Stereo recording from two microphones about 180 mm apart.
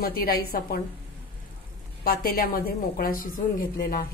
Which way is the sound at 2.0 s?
55° left (ahead or behind).